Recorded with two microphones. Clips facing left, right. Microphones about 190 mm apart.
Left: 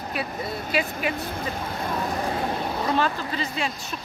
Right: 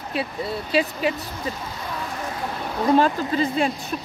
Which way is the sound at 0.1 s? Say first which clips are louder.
Right 4 dB; 30° right (ahead or behind).